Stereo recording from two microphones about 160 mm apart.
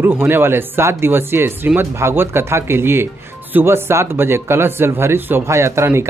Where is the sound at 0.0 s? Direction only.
15° right (ahead or behind).